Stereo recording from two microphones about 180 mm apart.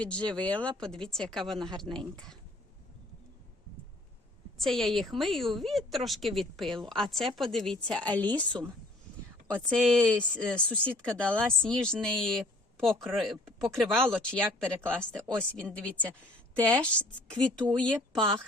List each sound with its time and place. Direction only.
0.2 s speech: 25° right (ahead or behind)
0.4 s a woman's voice: 5° left (ahead or behind)
4.5 s a woman's voice: centre (ahead or behind)
9.6 s a woman's voice: 5° left (ahead or behind)